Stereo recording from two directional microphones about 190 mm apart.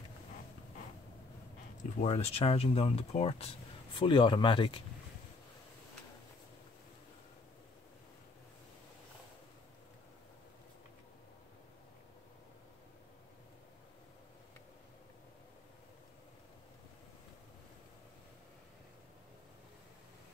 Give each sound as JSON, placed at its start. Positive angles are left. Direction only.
{"t": 1.8, "sound": "speech", "side_deg": 35}